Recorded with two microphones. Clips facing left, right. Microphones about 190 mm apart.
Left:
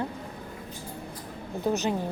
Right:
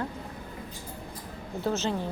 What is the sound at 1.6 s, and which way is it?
Speech, 15° left (ahead or behind).